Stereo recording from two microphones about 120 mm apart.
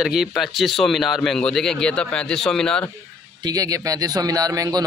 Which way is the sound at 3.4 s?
30° right (ahead or behind).